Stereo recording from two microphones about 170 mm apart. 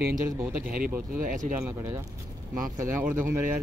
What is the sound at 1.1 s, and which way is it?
Speech, 50° right (ahead or behind).